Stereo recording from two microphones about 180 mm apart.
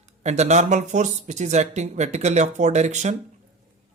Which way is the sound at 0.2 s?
40° right (ahead or behind).